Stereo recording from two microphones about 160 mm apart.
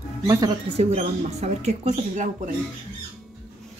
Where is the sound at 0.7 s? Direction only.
45° right (ahead or behind).